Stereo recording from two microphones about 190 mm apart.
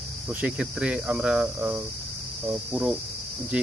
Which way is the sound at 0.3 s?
5° right (ahead or behind).